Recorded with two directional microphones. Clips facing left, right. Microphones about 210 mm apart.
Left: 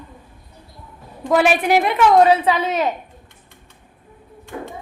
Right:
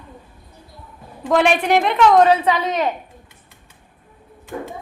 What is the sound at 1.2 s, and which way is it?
A woman's voice, 5° left (ahead or behind).